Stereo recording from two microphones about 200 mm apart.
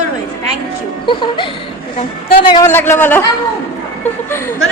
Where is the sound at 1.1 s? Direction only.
25° left (ahead or behind).